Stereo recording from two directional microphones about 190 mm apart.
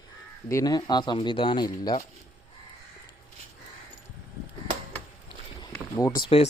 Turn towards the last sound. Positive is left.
turn(degrees=30)  # may be behind; listen again after turning